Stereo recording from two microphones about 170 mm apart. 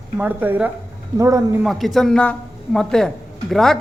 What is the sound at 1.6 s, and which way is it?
Speech, centre (ahead or behind).